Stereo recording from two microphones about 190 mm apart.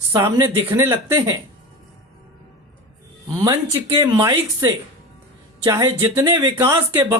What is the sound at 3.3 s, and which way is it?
Speech, 15° right (ahead or behind).